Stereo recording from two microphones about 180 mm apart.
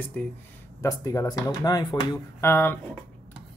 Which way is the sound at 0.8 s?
20° left (ahead or behind).